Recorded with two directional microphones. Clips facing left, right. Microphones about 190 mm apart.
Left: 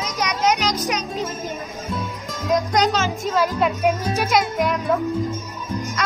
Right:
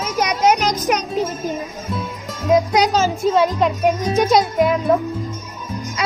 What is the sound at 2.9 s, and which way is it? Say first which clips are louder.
Speech: right 5 dB; 35° right (ahead or behind).